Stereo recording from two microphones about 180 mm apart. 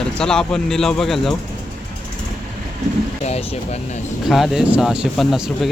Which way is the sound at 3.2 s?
35° left (ahead or behind).